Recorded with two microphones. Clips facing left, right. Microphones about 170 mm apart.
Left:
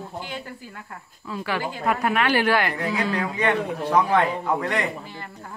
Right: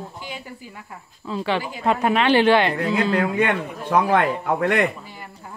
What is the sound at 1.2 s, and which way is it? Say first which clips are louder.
A woman's voice: right 3 dB; 25° right (ahead or behind).